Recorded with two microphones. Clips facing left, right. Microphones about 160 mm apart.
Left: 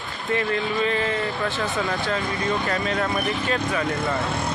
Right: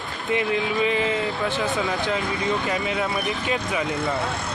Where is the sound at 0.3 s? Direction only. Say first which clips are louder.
Right 1 dB; 15° right (ahead or behind).